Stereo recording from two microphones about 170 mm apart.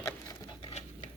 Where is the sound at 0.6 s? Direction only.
35° left (ahead or behind).